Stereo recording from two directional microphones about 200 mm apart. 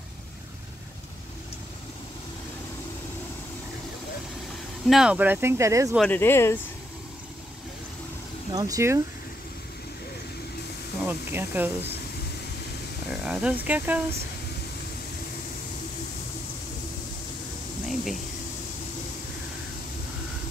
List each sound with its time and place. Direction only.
4.8 s speech: centre (ahead or behind)
5.9 s speech: 10° left (ahead or behind)
8.5 s speech: 20° right (ahead or behind)
11.1 s speech: 10° right (ahead or behind)
13.1 s speech: 5° right (ahead or behind)
17.8 s a sound: centre (ahead or behind)